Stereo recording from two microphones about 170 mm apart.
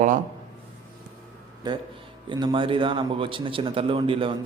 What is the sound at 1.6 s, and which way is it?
A man's voice, 25° right (ahead or behind).